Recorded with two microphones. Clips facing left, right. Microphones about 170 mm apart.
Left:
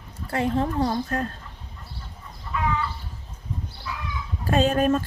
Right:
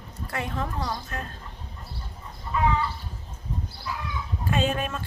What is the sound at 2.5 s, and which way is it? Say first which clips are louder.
Chicken: right 3 dB; 30° right (ahead or behind).